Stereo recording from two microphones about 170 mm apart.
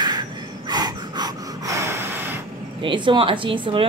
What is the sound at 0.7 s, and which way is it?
Snort, 25° right (ahead or behind).